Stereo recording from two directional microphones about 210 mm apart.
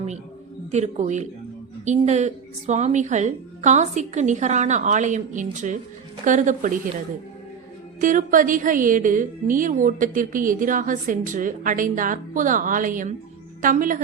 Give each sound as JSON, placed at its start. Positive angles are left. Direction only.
{"t": 0.7, "sound": "a woman's voice", "side_deg": -35}
{"t": 8.0, "sound": "a woman's voice", "side_deg": -40}